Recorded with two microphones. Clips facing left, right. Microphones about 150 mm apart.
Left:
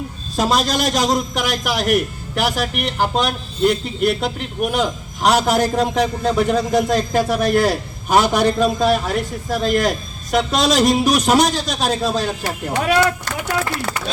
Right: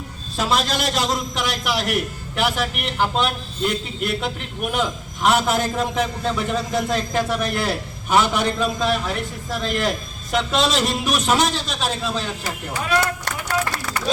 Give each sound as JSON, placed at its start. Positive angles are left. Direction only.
{"t": 0.3, "sound": "a man's voice", "side_deg": 40}
{"t": 12.4, "sound": "speech", "side_deg": 65}